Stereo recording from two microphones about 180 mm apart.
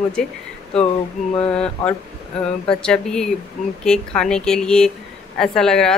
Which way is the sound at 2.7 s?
5° left (ahead or behind).